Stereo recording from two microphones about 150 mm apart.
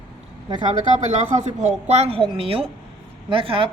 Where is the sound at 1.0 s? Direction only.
50° right (ahead or behind).